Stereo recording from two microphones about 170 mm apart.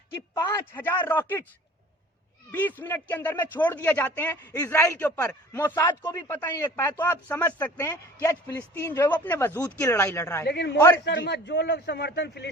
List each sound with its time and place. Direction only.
0.3 s a man's voice: 20° left (ahead or behind)
2.5 s a man's voice: 10° left (ahead or behind)
5.8 s speech: 25° left (ahead or behind)
6.2 s a man's voice: 10° left (ahead or behind)
10.4 s speech: 80° left